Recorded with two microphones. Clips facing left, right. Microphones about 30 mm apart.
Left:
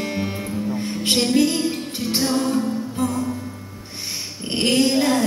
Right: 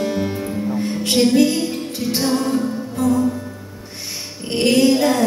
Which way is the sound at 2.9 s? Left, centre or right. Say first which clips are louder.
Right 8 dB; left.